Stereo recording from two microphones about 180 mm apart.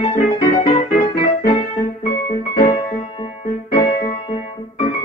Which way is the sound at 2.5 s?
40° left (ahead or behind).